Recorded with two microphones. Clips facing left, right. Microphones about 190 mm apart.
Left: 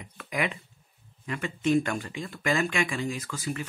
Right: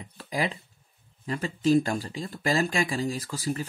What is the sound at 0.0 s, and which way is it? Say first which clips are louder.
Speech: right 1 dB; 30° right (ahead or behind).